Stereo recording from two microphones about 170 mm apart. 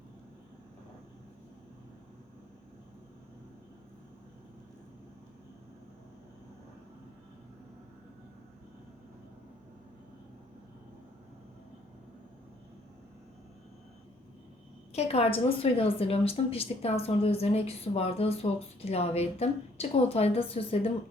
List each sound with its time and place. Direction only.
14.9 s a woman's voice: 35° left (ahead or behind)